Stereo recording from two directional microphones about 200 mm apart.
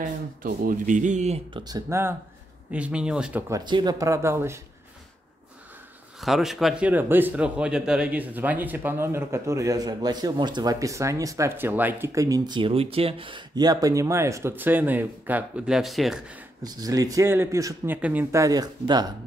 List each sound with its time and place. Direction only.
0.0 s speech: 40° right (ahead or behind)
1.6 s a man's voice: 15° right (ahead or behind)
6.2 s a man's voice: centre (ahead or behind)
16.6 s a man's voice: 20° right (ahead or behind)